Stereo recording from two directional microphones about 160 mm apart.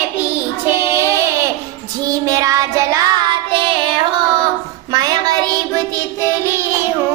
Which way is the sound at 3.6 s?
30° right (ahead or behind).